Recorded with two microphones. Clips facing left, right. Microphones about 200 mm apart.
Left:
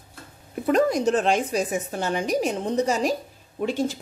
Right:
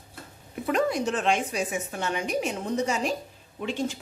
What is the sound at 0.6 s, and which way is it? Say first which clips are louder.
A woman's voice: left 5 dB; 40° left (ahead or behind).